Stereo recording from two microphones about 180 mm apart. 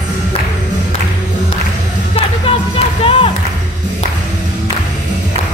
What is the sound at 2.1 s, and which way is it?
Music, 30° left (ahead or behind).